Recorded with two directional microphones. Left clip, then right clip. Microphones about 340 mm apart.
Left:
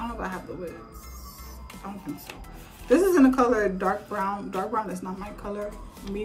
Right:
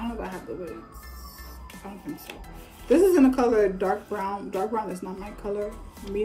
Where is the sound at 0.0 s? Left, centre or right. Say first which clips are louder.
Left 1 dB; centre.